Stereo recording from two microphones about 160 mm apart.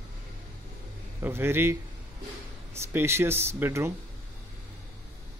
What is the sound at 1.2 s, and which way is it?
Speech, 15° right (ahead or behind).